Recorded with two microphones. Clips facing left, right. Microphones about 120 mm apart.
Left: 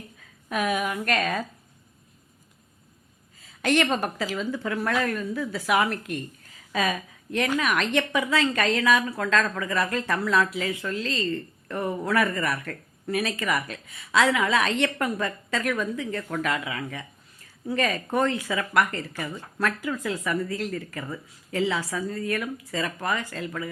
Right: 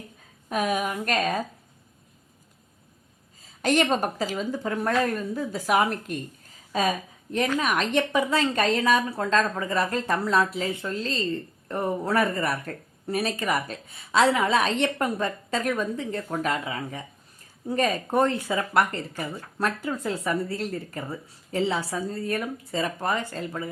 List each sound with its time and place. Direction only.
0.5 s a woman's voice: 45° right (ahead or behind)
3.4 s a woman's voice: 40° right (ahead or behind)
7.6 s a woman's voice: 30° right (ahead or behind)